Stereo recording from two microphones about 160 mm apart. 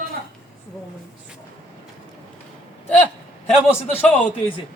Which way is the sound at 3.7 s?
15° left (ahead or behind).